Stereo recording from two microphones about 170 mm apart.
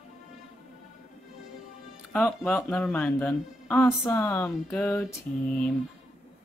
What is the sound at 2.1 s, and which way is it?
Speech, 10° left (ahead or behind).